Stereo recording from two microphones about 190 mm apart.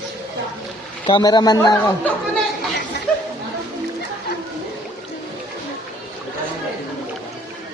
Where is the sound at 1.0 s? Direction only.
20° left (ahead or behind).